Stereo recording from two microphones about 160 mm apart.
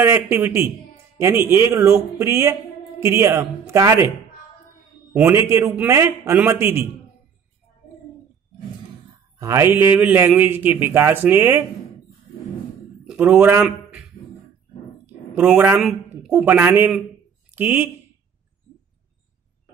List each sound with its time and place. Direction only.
0.0 s a man's voice: 15° right (ahead or behind)
5.1 s a man's voice: 15° right (ahead or behind)
9.4 s a man's voice: 20° right (ahead or behind)
13.0 s a man's voice: 5° right (ahead or behind)
15.0 s a sound: 10° right (ahead or behind)
15.8 s a man's voice: 5° right (ahead or behind)